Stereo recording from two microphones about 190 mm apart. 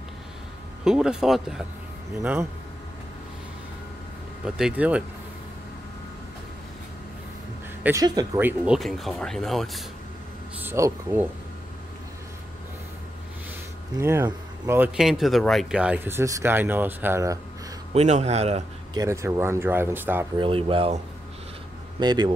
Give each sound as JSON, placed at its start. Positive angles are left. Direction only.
{"t": 0.8, "sound": "speech", "side_deg": -5}
{"t": 4.5, "sound": "speech", "side_deg": -5}
{"t": 7.8, "sound": "speech", "side_deg": -15}
{"t": 10.6, "sound": "speech", "side_deg": -10}
{"t": 13.9, "sound": "speech", "side_deg": -15}
{"t": 15.0, "sound": "speech", "side_deg": 0}
{"t": 17.9, "sound": "speech", "side_deg": -35}
{"t": 18.9, "sound": "speech", "side_deg": -15}
{"t": 20.3, "sound": "speech", "side_deg": -30}
{"t": 22.0, "sound": "speech", "side_deg": -20}